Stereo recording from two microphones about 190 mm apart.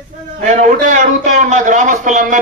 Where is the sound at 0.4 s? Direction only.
40° right (ahead or behind).